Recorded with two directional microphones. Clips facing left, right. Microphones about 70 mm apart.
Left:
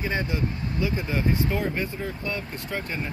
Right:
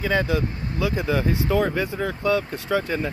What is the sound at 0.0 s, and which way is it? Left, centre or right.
Speech, right.